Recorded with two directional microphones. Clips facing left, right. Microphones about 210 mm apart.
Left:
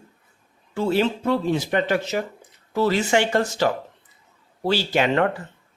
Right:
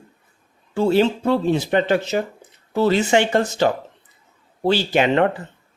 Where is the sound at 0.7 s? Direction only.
30° right (ahead or behind).